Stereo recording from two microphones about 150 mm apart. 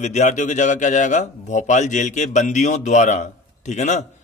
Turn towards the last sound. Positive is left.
turn(degrees=50)  # may be behind; listen again after turning